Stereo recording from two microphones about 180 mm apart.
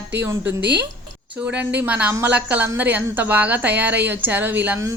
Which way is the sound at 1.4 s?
5° right (ahead or behind).